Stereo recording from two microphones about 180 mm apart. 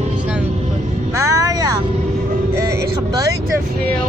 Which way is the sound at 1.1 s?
15° right (ahead or behind).